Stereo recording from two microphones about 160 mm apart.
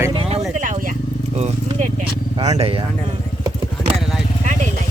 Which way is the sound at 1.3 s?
40° right (ahead or behind).